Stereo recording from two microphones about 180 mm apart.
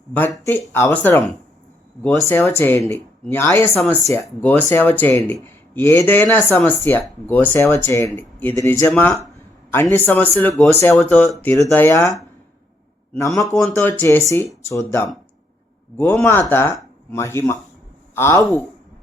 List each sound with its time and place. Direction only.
0.7 s speech: 10° left (ahead or behind)